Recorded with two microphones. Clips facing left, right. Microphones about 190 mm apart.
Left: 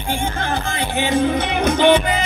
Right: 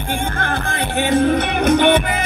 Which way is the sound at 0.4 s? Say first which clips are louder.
Even; 55° right (ahead or behind).